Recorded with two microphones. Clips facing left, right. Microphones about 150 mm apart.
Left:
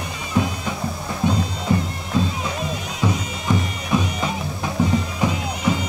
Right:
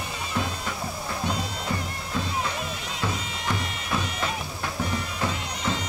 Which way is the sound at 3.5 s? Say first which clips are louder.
Left 9 dB; 20° left (ahead or behind).